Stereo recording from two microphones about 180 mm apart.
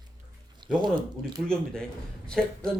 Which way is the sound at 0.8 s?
20° right (ahead or behind).